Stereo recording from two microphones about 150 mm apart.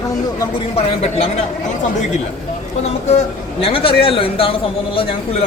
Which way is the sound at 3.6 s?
40° left (ahead or behind).